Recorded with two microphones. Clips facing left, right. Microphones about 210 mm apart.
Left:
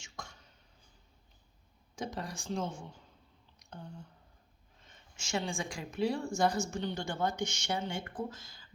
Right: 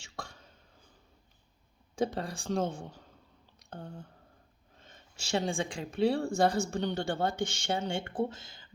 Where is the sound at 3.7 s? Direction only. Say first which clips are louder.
Right 4 dB; 50° right (ahead or behind).